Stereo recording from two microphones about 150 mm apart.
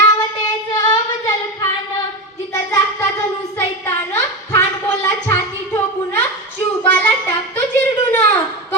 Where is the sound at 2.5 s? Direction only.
20° left (ahead or behind).